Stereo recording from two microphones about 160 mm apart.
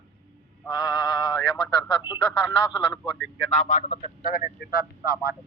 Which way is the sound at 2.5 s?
30° left (ahead or behind).